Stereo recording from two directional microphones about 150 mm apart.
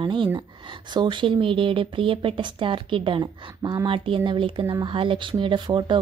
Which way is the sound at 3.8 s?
35° right (ahead or behind).